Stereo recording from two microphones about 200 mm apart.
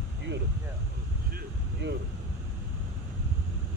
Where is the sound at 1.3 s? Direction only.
60° right (ahead or behind).